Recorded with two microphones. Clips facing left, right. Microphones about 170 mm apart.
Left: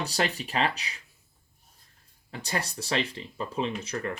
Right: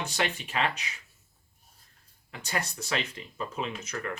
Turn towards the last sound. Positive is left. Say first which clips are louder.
# left 4 dB
turn(degrees=30)  # may be behind; listen again after turning